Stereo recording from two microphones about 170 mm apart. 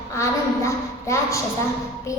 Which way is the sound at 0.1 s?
15° left (ahead or behind).